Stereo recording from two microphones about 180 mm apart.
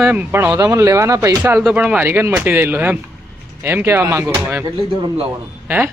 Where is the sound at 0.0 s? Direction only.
10° right (ahead or behind).